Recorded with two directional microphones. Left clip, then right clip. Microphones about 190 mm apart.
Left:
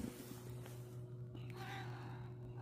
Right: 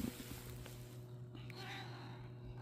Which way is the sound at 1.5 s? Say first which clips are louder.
Even; 55° left (ahead or behind).